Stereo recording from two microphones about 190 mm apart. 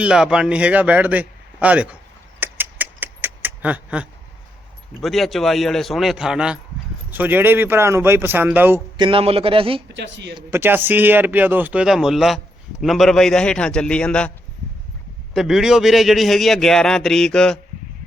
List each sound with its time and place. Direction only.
0.0 s a man's voice: 5° right (ahead or behind)
2.4 s a sound: 10° right (ahead or behind)
4.9 s a man's voice: centre (ahead or behind)
9.0 s a man's voice: 30° right (ahead or behind)
9.9 s speech: 65° right (ahead or behind)
10.5 s a man's voice: 10° right (ahead or behind)